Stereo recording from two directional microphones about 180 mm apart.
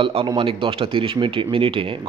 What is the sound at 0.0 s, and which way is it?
A man's voice, 30° right (ahead or behind).